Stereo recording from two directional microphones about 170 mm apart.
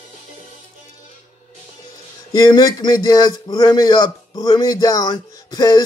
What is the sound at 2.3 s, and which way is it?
Speech, 20° left (ahead or behind).